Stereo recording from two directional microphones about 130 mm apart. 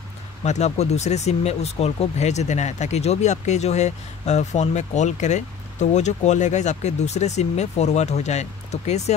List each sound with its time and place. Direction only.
0.4 s speech: 60° left (ahead or behind)